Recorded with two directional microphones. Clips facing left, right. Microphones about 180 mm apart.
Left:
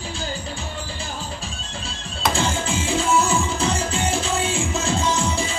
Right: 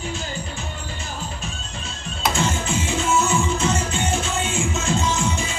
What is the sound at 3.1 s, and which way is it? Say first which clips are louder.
Music: even; 35° left (ahead or behind).